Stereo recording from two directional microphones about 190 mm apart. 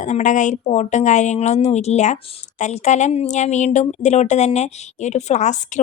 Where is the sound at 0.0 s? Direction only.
40° left (ahead or behind).